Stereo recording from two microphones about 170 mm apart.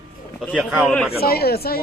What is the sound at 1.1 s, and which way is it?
Speech, 65° left (ahead or behind).